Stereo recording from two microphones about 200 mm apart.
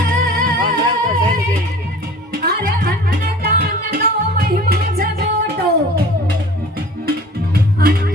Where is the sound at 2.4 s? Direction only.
50° right (ahead or behind).